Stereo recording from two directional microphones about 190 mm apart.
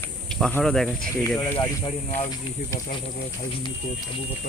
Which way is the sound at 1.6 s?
30° left (ahead or behind).